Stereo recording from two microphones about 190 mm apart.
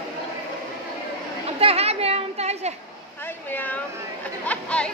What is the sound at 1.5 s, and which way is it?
A child's voice, 30° right (ahead or behind).